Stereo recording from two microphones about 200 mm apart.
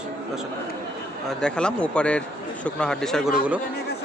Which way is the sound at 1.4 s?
5° left (ahead or behind).